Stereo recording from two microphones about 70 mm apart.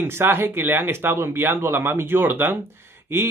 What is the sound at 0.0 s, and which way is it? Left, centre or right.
Speech, right.